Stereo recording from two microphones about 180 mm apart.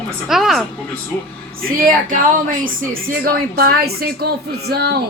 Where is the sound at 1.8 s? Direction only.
50° right (ahead or behind).